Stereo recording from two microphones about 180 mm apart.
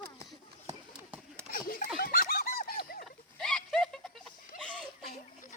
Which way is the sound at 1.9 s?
55° left (ahead or behind).